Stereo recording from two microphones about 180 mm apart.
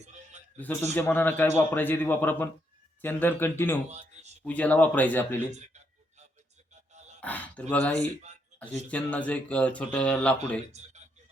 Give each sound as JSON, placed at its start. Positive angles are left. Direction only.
{"t": 0.5, "sound": "speech", "side_deg": 10}
{"t": 3.8, "sound": "a sound", "side_deg": -40}
{"t": 4.4, "sound": "speech", "side_deg": 10}
{"t": 5.5, "sound": "a sound", "side_deg": -40}
{"t": 6.9, "sound": "music", "side_deg": -40}
{"t": 7.2, "sound": "speech", "side_deg": 10}